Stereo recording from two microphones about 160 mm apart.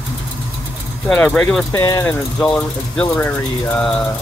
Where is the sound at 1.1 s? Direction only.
10° left (ahead or behind).